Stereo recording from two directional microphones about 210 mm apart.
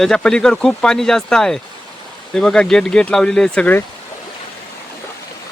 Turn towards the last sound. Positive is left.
turn(degrees=5)  # may be behind; listen again after turning